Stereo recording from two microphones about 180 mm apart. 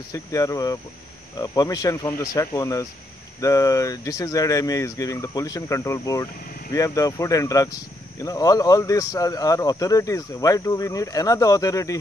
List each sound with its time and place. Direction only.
0.1 s speech: 20° left (ahead or behind)